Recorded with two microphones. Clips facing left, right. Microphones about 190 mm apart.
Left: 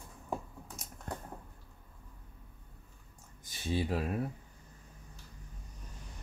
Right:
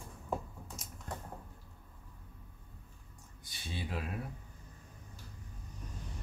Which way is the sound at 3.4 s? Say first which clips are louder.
Left 9 dB; 40° left (ahead or behind).